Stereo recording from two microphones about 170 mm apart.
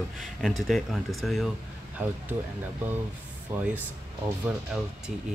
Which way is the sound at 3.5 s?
10° right (ahead or behind).